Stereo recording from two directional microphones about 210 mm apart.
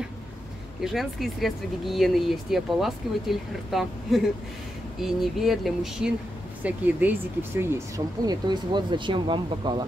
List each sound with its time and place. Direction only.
0.7 s speech: centre (ahead or behind); by 9.8 s 20° right (ahead or behind)